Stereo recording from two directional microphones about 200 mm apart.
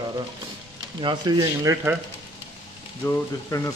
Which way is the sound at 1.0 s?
20° right (ahead or behind).